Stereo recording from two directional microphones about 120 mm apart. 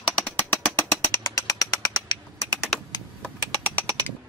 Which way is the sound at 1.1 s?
25° left (ahead or behind).